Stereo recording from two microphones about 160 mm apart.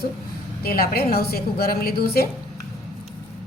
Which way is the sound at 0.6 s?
70° left (ahead or behind).